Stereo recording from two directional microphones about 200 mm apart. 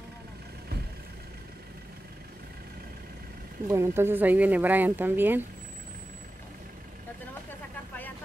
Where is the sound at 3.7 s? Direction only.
15° right (ahead or behind).